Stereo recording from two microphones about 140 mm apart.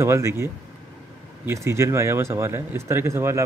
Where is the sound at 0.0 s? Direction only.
20° right (ahead or behind).